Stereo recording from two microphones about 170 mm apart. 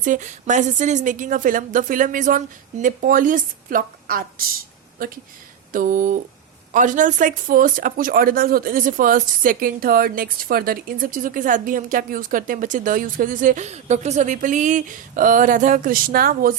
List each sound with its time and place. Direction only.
0.0 s speech: 50° right (ahead or behind)
5.7 s speech: 50° right (ahead or behind)